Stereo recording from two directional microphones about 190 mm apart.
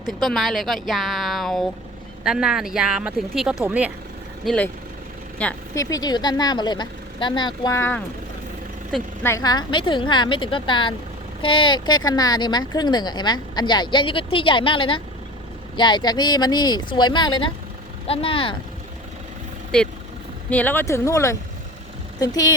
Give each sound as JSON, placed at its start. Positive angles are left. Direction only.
{"t": 0.0, "sound": "speech", "side_deg": 0}
{"t": 4.4, "sound": "speech", "side_deg": 5}
{"t": 5.7, "sound": "speech", "side_deg": 15}
{"t": 9.2, "sound": "speech", "side_deg": 15}
{"t": 20.5, "sound": "speech", "side_deg": 10}